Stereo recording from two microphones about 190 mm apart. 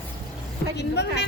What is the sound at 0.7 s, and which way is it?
Speech, 60° left (ahead or behind).